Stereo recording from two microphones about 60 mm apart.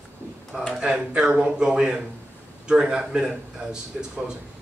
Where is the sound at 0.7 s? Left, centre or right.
Centre.